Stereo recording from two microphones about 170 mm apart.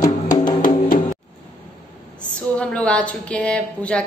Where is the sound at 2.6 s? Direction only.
5° left (ahead or behind).